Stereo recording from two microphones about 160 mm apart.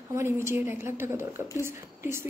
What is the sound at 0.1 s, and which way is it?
Speech, 15° right (ahead or behind).